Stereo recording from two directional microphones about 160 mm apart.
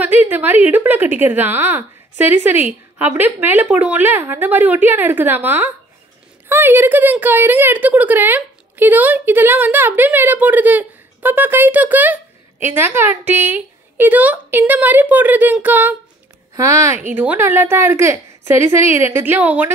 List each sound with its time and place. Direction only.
0.0 s a woman's voice: 10° right (ahead or behind)